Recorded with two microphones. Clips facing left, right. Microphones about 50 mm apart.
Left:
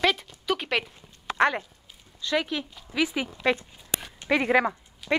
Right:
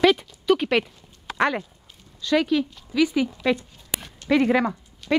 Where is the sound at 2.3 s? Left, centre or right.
Centre.